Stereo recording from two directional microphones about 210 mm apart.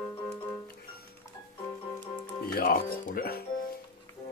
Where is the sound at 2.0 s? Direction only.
10° left (ahead or behind).